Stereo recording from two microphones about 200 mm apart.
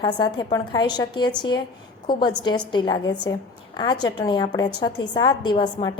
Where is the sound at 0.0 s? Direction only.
20° left (ahead or behind).